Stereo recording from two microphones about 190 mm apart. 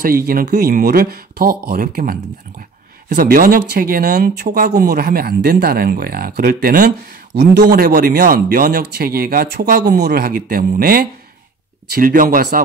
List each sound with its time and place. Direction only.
0.3 s speech: 50° right (ahead or behind)
3.2 s speech: 45° right (ahead or behind)